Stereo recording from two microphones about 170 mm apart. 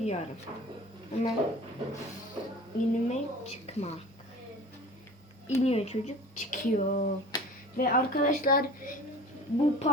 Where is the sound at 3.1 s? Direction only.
40° left (ahead or behind).